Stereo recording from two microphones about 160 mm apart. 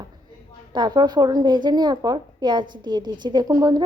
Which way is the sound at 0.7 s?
25° right (ahead or behind).